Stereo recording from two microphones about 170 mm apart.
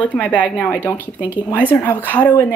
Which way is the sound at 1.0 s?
10° right (ahead or behind).